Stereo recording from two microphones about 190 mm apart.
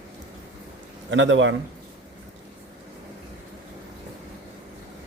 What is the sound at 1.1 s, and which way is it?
Speech, 85° right.